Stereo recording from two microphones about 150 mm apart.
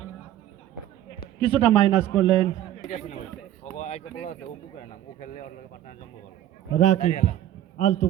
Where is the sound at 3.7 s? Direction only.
50° left (ahead or behind).